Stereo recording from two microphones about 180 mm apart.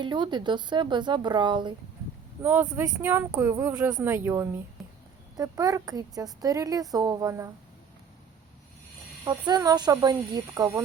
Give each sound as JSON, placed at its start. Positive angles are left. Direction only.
{"t": 0.0, "sound": "a woman's voice", "side_deg": -25}
{"t": 2.4, "sound": "a woman's voice", "side_deg": -10}
{"t": 9.2, "sound": "a woman's voice", "side_deg": -20}